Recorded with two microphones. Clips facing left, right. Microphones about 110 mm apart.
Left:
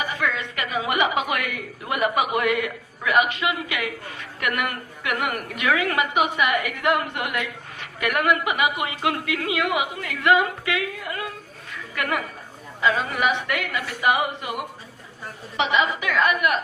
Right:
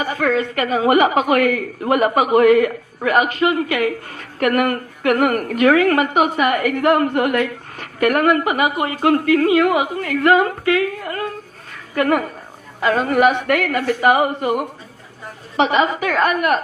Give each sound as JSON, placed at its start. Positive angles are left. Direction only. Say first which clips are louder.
{"t": 0.0, "sound": "a woman's voice", "louder": "right 8 dB", "side_deg": -40}
{"t": 12.8, "sound": "a woman's voice", "louder": "right 7 dB", "side_deg": -50}